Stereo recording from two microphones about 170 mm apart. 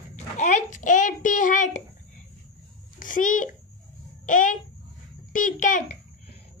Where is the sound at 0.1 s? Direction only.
45° left (ahead or behind).